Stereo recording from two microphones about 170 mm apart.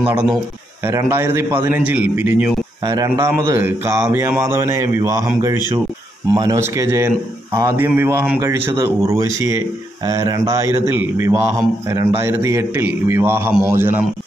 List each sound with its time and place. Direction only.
0.0 s speech: 10° right (ahead or behind)
2.8 s speech: 25° right (ahead or behind)
6.3 s speech: 20° right (ahead or behind)